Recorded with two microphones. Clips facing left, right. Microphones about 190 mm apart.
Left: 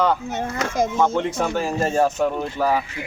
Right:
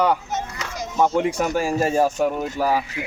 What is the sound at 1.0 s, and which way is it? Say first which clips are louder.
Speech: right 5 dB; 10° right (ahead or behind).